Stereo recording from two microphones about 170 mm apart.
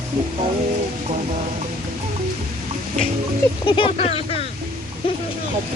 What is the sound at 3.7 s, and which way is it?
Speech, 30° left (ahead or behind).